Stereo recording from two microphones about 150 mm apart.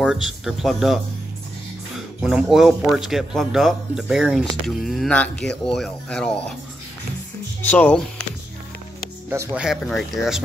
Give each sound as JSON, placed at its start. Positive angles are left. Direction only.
{"t": 0.0, "sound": "speech", "side_deg": -5}
{"t": 7.6, "sound": "speech", "side_deg": 10}
{"t": 9.3, "sound": "speech", "side_deg": -20}
{"t": 9.6, "sound": "speech", "side_deg": 0}